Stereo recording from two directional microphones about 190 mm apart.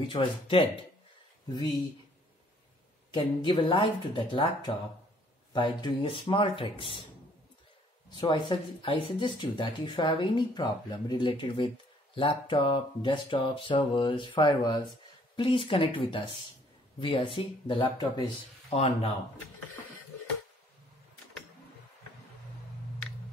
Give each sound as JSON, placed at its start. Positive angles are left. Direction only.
{"t": 0.1, "sound": "speech", "side_deg": 25}
{"t": 3.1, "sound": "speech", "side_deg": 25}
{"t": 8.2, "sound": "speech", "side_deg": 25}